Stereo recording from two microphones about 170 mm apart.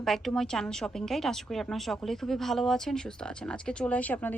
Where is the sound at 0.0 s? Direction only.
Centre (ahead or behind).